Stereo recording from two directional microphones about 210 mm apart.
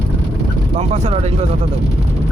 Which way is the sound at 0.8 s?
30° right (ahead or behind).